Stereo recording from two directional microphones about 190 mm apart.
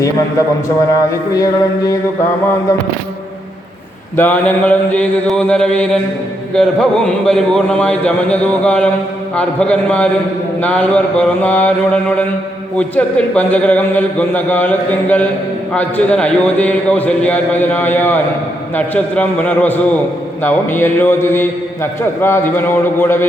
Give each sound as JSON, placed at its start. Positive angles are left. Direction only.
{"t": 1.3, "sound": "a man's voice", "side_deg": 20}
{"t": 4.2, "sound": "a man's voice", "side_deg": 10}
{"t": 12.7, "sound": "a man's voice", "side_deg": 5}